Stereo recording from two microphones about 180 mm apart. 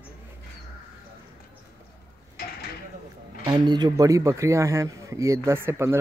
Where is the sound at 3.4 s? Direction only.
20° right (ahead or behind).